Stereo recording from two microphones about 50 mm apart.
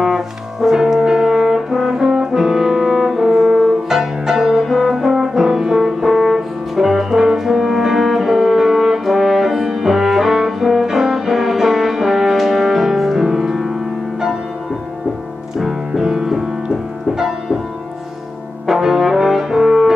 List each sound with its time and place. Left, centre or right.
0.0 s brass instrument: centre
15.6 s music: centre
18.7 s brass instrument: centre